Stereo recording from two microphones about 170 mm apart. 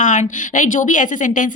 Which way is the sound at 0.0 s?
45° left (ahead or behind).